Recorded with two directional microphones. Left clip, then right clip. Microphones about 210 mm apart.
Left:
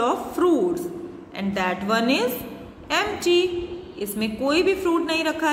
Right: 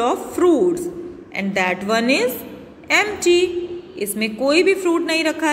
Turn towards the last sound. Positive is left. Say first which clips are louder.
# right 4 dB
turn(degrees=-25)  # may be behind; listen again after turning